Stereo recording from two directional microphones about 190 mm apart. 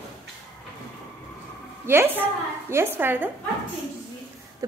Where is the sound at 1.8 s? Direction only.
10° right (ahead or behind).